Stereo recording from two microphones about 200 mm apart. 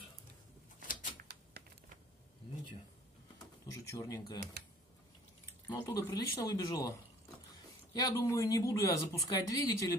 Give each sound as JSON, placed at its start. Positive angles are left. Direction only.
{"t": 1.2, "sound": "a sound", "side_deg": -55}
{"t": 3.8, "sound": "speech", "side_deg": 15}
{"t": 5.7, "sound": "speech", "side_deg": 15}